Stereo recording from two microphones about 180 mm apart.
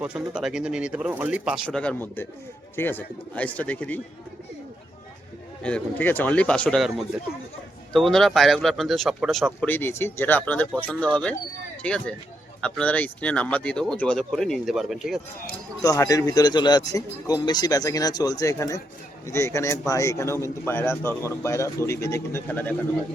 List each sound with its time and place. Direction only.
0.0 s speech: 5° right (ahead or behind)
1.6 s speech: 5° left (ahead or behind)
5.6 s speech: 10° left (ahead or behind)
15.8 s speech: 20° left (ahead or behind)